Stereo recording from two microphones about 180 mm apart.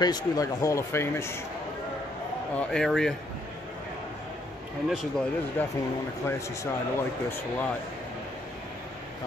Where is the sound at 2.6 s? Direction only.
5° left (ahead or behind).